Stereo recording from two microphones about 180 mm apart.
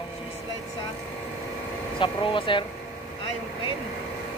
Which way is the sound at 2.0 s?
30° left (ahead or behind).